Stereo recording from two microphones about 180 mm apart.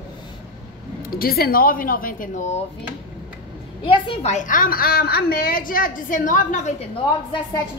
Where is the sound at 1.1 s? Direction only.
55° left (ahead or behind).